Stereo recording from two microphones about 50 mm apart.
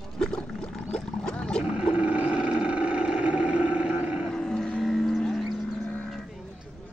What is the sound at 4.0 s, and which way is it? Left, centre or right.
Roaring cats, right.